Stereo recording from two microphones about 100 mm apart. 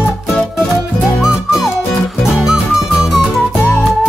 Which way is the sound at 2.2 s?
5° right (ahead or behind).